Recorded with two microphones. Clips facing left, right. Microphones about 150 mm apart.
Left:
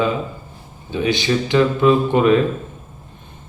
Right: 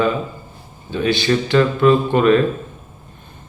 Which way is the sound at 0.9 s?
20° left (ahead or behind).